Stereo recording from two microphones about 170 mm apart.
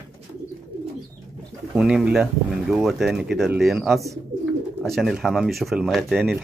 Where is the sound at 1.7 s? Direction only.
5° right (ahead or behind).